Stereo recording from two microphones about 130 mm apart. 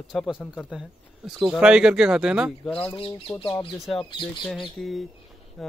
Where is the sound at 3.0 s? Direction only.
45° left (ahead or behind).